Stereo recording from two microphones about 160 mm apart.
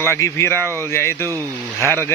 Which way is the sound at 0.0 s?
15° left (ahead or behind).